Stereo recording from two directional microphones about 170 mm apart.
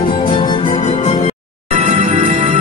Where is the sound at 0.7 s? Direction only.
40° left (ahead or behind).